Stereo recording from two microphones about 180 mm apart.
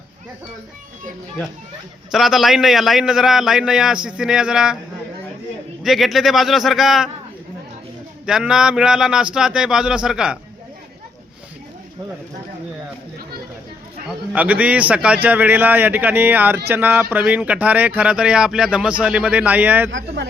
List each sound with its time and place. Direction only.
2.1 s a man's voice: centre (ahead or behind)
5.8 s a man's voice: centre (ahead or behind)
8.3 s a man's voice: 5° right (ahead or behind)
14.3 s speech: 10° right (ahead or behind)
19.9 s speech: 90° right